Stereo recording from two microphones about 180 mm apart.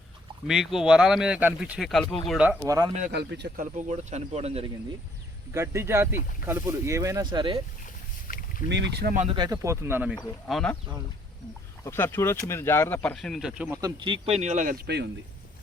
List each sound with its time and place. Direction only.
0.4 s speech: centre (ahead or behind)
2.6 s speech: 20° right (ahead or behind)
3.1 s speech: 70° right (ahead or behind)
3.8 s speech: 40° right (ahead or behind)
5.5 s speech: 15° right (ahead or behind)
8.3 s boat: 50° left (ahead or behind)
8.7 s speech: 70° right (ahead or behind)
9.3 s speech: 20° right (ahead or behind)
10.4 s speech: 5° left (ahead or behind)
11.9 s speech: 10° left (ahead or behind); by 13.7 s 5° right (ahead or behind)
13.8 s speech: 25° right (ahead or behind); by 14.8 s 45° right (ahead or behind)
14.8 s speech: 65° right (ahead or behind)